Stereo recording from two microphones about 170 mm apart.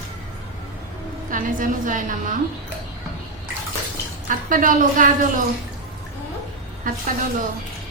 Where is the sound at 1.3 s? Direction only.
50° right (ahead or behind).